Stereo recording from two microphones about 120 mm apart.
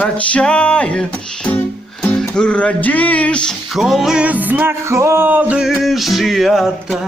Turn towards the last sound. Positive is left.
turn(degrees=0)  # may be behind; listen again after turning